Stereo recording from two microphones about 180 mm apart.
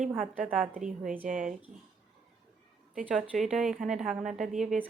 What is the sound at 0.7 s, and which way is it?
Speech, 45° right (ahead or behind).